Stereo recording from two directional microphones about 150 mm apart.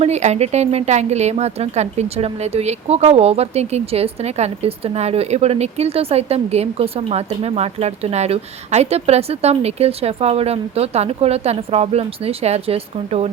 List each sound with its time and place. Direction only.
0.0 s speech: 50° right (ahead or behind)